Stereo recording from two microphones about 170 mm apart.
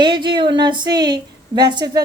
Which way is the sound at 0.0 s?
25° right (ahead or behind).